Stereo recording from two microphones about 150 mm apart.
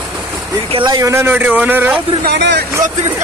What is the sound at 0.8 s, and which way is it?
A man's voice, 25° right (ahead or behind).